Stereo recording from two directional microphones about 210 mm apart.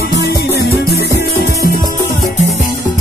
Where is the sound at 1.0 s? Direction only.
50° left (ahead or behind).